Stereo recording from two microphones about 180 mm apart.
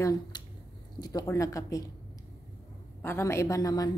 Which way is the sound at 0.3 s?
25° left (ahead or behind).